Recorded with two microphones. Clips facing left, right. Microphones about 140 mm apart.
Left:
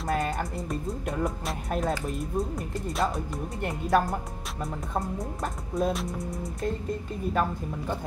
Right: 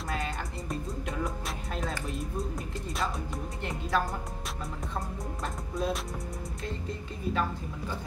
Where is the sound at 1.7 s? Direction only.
50° left (ahead or behind).